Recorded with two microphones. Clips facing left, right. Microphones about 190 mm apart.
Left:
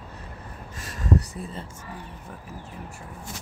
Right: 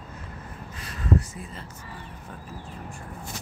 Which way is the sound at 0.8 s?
40° left (ahead or behind).